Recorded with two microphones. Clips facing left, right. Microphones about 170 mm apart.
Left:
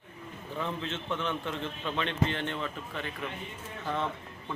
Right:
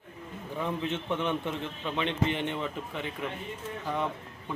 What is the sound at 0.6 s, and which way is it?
A man's voice, 15° right (ahead or behind).